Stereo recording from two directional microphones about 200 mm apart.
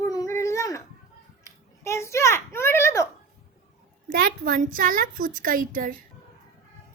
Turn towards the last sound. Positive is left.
turn(degrees=-45)  # may be behind; listen again after turning